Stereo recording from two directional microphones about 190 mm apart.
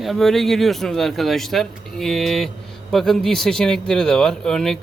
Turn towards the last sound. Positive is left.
turn(degrees=0)  # may be behind; listen again after turning